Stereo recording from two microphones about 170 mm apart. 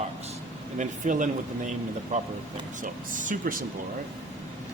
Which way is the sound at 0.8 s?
50° right (ahead or behind).